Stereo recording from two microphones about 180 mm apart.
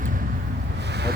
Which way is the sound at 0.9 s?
65° right (ahead or behind).